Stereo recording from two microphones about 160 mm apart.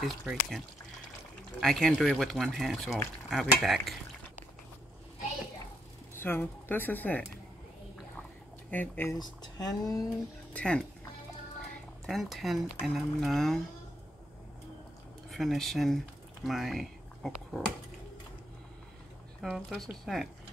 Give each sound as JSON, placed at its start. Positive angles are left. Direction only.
{"t": 0.0, "sound": "speech", "side_deg": 0}
{"t": 6.1, "sound": "speech", "side_deg": 15}
{"t": 8.6, "sound": "speech", "side_deg": 10}
{"t": 9.2, "sound": "speech", "side_deg": 25}
{"t": 10.5, "sound": "speech", "side_deg": 5}
{"t": 12.1, "sound": "speech", "side_deg": 0}
{"t": 15.2, "sound": "speech", "side_deg": 0}
{"t": 19.4, "sound": "speech", "side_deg": 0}